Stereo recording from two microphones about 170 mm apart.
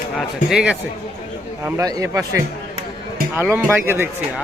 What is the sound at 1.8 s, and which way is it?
Speech, 20° right (ahead or behind).